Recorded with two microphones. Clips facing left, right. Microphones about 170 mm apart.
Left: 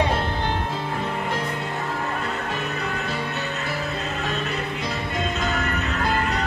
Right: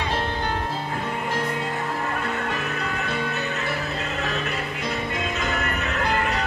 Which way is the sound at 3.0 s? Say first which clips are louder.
Right 1 dB; 65° right (ahead or behind).